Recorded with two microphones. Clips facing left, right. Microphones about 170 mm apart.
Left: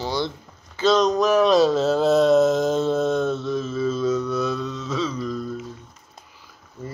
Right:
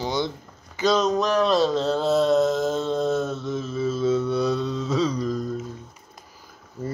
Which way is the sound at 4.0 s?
25° right (ahead or behind).